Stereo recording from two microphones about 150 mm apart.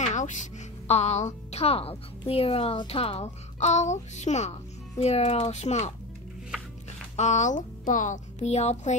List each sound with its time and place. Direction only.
0.1 s music: 55° left (ahead or behind)
0.8 s a woman's voice: 45° left (ahead or behind)
7.2 s speech: 50° left (ahead or behind)